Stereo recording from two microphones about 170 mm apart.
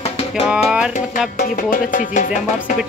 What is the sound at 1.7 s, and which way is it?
Speech, 55° left (ahead or behind).